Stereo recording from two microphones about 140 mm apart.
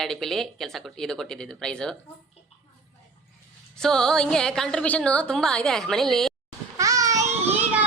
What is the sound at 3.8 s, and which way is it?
Speech, 5° left (ahead or behind).